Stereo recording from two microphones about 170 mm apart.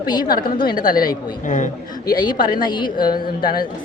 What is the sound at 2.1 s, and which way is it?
A woman's voice, 25° left (ahead or behind).